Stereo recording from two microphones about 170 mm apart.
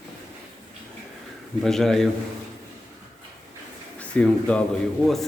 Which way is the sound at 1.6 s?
Centre (ahead or behind).